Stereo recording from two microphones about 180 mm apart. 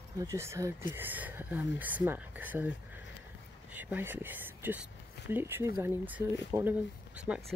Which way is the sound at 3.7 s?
10° right (ahead or behind).